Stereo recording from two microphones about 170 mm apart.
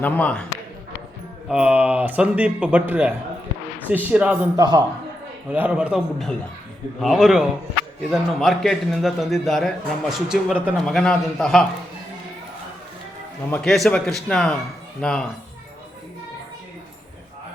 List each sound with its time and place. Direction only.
0.0 s a man's voice: 10° left (ahead or behind)
1.5 s a man's voice: 5° right (ahead or behind)
4.5 s a man's voice: 25° right (ahead or behind)
5.5 s a man's voice: 10° right (ahead or behind)
13.5 s a man's voice: centre (ahead or behind)